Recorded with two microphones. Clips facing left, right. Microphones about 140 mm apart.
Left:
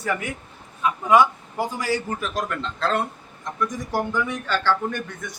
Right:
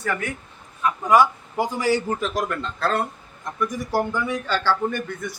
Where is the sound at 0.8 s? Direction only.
15° left (ahead or behind).